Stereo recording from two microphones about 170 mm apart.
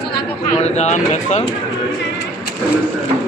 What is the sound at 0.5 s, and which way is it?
Speech, 40° left (ahead or behind).